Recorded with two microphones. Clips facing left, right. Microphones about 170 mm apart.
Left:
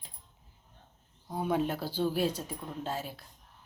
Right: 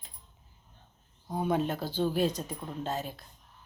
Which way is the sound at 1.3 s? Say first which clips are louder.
Right 1 dB; 5° left (ahead or behind).